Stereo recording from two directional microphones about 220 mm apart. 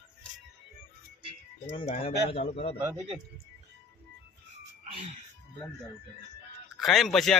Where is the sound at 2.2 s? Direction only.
25° left (ahead or behind).